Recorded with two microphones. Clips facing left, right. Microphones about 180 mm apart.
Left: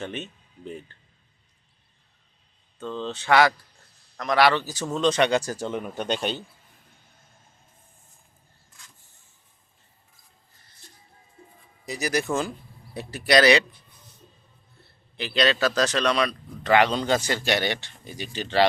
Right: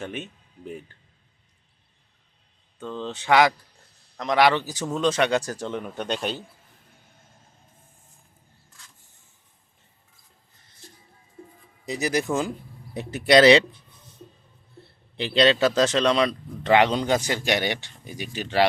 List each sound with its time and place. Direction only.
0.0 s speech: 10° right (ahead or behind)
2.7 s a man's voice: 15° right (ahead or behind)
4.9 s speech: 5° right (ahead or behind)
11.9 s speech: 25° right (ahead or behind)
15.1 s a man's voice: 30° right (ahead or behind); by 18.6 s 10° right (ahead or behind)